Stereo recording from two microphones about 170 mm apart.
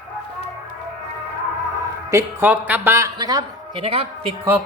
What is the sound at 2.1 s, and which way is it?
Speech, 15° right (ahead or behind).